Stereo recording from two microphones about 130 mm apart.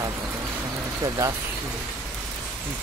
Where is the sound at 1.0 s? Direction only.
30° right (ahead or behind).